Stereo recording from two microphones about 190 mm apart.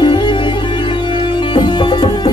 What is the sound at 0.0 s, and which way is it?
Music, 25° left (ahead or behind).